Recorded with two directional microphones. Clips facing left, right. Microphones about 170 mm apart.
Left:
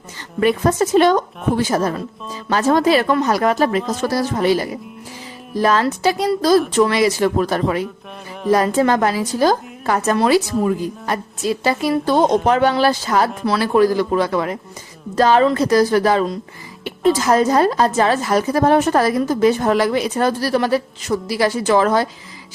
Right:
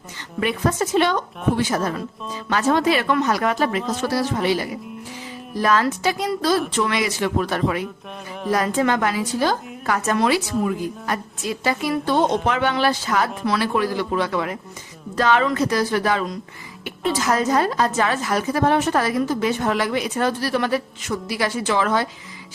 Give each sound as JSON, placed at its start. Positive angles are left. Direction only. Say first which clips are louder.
{"t": 0.3, "sound": "a woman's voice", "louder": "left 6 dB", "side_deg": 40}
{"t": 5.6, "sound": "a woman's voice", "louder": "left 3 dB", "side_deg": 30}